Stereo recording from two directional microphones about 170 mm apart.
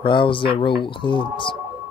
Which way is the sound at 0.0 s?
30° left (ahead or behind).